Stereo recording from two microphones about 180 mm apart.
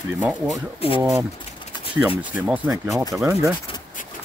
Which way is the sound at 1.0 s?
15° right (ahead or behind).